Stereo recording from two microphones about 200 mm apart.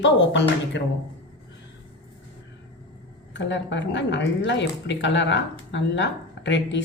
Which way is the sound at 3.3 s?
65° left (ahead or behind).